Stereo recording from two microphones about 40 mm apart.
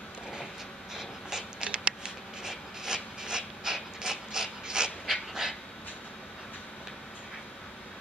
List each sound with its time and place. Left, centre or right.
1.6 s rub: right
5.0 s breathing: centre